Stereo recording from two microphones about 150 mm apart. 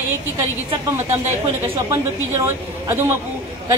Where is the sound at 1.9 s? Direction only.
20° right (ahead or behind).